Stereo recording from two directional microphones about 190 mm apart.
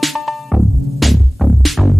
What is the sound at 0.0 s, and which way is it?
Music, centre (ahead or behind).